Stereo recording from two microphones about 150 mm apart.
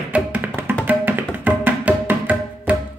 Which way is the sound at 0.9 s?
10° right (ahead or behind).